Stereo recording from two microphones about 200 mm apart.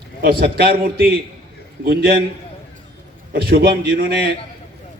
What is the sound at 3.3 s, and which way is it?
A man's voice, 50° right (ahead or behind).